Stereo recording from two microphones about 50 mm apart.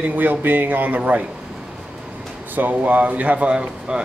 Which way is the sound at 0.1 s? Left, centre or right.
Right.